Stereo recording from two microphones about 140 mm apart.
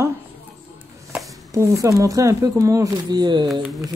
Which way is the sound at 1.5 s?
20° right (ahead or behind).